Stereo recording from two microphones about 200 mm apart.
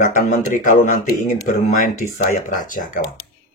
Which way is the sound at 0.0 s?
40° left (ahead or behind).